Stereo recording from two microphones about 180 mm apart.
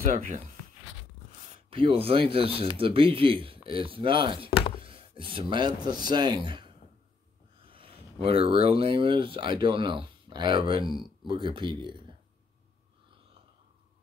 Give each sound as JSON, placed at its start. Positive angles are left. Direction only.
{"t": 0.1, "sound": "speech", "side_deg": -45}
{"t": 1.7, "sound": "speech", "side_deg": -30}
{"t": 4.8, "sound": "a sound", "side_deg": -30}
{"t": 5.9, "sound": "speech", "side_deg": -25}
{"t": 7.7, "sound": "speech", "side_deg": -30}